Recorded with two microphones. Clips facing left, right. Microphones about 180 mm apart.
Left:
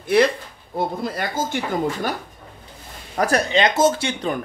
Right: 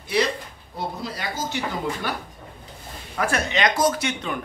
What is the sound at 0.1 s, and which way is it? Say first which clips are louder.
Speech: left 6 dB; 55° left (ahead or behind).